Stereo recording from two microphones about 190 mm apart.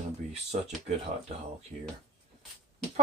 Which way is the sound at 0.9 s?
40° right (ahead or behind).